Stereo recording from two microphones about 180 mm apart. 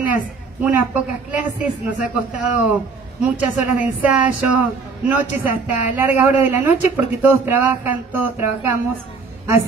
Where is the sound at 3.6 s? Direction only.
5° right (ahead or behind).